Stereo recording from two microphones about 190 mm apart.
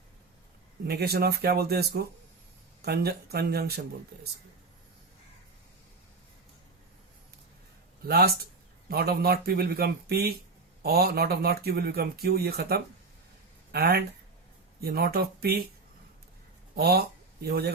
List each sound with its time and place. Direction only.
0.9 s speech: 55° right (ahead or behind)
8.0 s speech: 55° right (ahead or behind)
16.7 s speech: 55° right (ahead or behind)